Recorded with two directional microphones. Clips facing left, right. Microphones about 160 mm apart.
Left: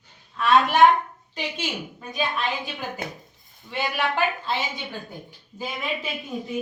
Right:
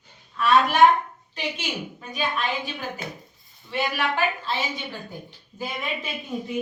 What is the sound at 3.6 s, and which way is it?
Speech, 20° left (ahead or behind).